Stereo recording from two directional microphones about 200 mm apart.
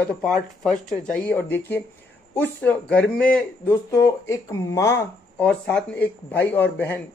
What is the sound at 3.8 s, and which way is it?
Speech, 15° left (ahead or behind).